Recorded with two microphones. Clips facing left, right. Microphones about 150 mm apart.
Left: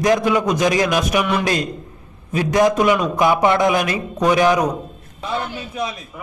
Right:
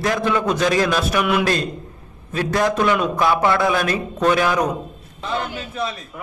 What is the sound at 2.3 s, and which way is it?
A man's voice, 15° left (ahead or behind).